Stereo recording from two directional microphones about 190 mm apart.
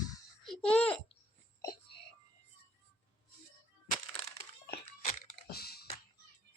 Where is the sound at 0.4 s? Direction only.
5° left (ahead or behind).